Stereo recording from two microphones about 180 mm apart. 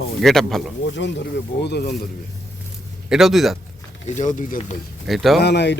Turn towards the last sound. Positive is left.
turn(degrees=70)  # may be behind; listen again after turning